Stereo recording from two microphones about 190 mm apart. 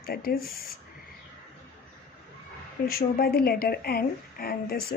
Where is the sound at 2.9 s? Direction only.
50° left (ahead or behind).